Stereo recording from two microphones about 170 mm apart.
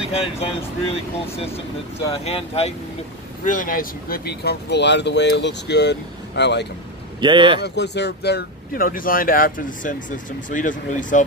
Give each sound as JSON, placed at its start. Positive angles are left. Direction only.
{"t": 0.1, "sound": "speech", "side_deg": 35}
{"t": 2.2, "sound": "speech", "side_deg": 35}
{"t": 3.4, "sound": "speech", "side_deg": 55}
{"t": 7.2, "sound": "speech", "side_deg": -30}
{"t": 7.6, "sound": "speech", "side_deg": 80}